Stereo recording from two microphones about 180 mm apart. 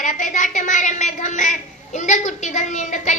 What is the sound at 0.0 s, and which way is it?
A woman's voice, 45° left (ahead or behind).